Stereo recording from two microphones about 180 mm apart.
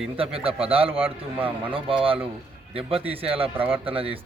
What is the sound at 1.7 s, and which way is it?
Speech, 30° right (ahead or behind).